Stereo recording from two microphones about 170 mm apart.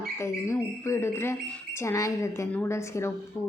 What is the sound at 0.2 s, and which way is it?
A woman's voice, 15° left (ahead or behind).